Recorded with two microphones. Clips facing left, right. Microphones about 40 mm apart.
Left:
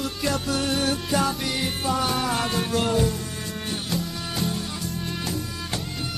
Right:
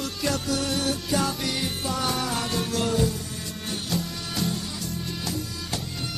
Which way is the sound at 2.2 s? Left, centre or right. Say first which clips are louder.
Left 3 dB; left.